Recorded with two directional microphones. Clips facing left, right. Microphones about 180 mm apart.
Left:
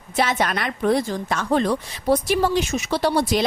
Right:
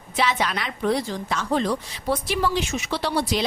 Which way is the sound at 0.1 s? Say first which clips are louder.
Left 2 dB; 45° left (ahead or behind).